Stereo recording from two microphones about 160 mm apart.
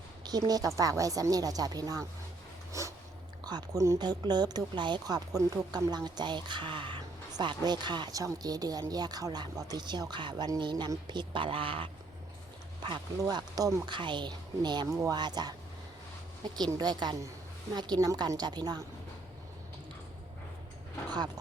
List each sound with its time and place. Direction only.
0.3 s speech: 25° right (ahead or behind)
2.7 s a sound: 20° right (ahead or behind)
3.4 s speech: 25° right (ahead or behind)
16.6 s speech: 25° right (ahead or behind)